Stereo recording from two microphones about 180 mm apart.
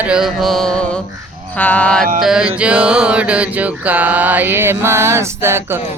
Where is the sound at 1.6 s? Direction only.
10° left (ahead or behind).